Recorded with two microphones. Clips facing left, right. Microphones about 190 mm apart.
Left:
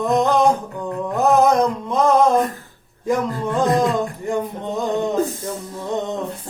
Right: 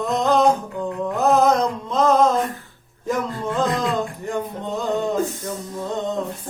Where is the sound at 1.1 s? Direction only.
15° left (ahead or behind).